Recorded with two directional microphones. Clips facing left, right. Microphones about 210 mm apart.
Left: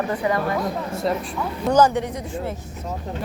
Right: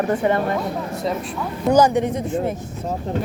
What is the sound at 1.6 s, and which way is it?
Speech, 10° right (ahead or behind).